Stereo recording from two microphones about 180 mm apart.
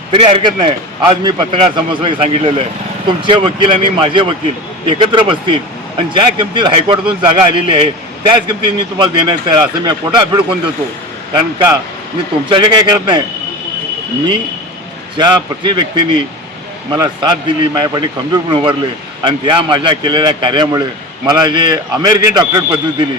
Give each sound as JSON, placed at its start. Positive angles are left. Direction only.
{"t": 0.1, "sound": "a man's voice", "side_deg": -25}
{"t": 15.2, "sound": "a man's voice", "side_deg": -25}